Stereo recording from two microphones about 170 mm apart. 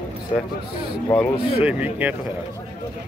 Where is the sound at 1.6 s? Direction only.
10° right (ahead or behind).